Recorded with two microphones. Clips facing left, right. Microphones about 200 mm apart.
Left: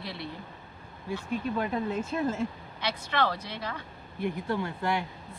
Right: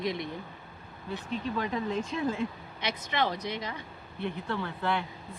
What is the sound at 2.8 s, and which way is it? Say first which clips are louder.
Speech: left 1 dB; 15° right (ahead or behind).